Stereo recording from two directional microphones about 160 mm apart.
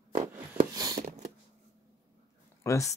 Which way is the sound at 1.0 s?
45° right (ahead or behind).